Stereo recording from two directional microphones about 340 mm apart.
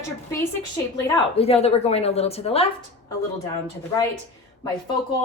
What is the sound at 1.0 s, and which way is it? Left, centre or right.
Speech, centre.